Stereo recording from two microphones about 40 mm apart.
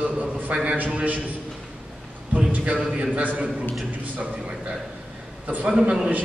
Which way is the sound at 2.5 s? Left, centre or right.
Right.